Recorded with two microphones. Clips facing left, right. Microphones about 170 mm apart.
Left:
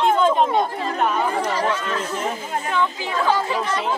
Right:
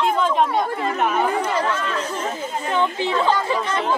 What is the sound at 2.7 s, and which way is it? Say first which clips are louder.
Speech: right 4 dB; 25° right (ahead or behind).